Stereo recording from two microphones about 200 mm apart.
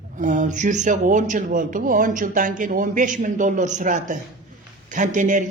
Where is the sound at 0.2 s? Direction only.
40° right (ahead or behind).